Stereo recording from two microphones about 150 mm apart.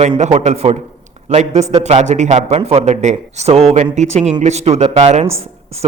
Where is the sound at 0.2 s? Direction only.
50° right (ahead or behind).